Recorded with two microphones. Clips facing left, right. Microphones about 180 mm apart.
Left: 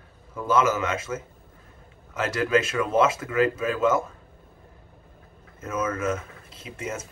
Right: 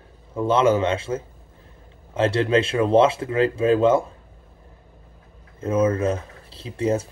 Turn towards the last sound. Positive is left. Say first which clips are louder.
# right 11 dB
turn(degrees=-35)  # may be behind; listen again after turning